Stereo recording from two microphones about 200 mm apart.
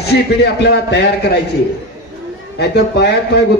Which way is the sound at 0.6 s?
55° left (ahead or behind).